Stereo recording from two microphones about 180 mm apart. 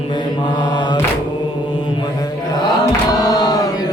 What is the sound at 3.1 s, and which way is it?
Mantra, 20° left (ahead or behind).